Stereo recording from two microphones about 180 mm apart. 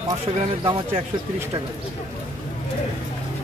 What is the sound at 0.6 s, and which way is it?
Speech, 30° right (ahead or behind).